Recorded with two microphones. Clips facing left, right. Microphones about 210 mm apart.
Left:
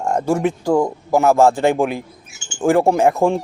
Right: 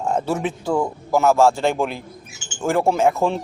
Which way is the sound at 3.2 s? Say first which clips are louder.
Left 4 dB; 15° left (ahead or behind).